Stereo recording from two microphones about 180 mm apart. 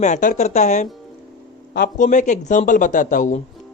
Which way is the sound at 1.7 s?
60° left (ahead or behind).